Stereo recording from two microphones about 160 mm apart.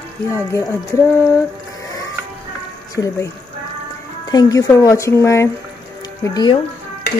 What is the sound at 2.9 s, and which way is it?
Speech, 20° left (ahead or behind).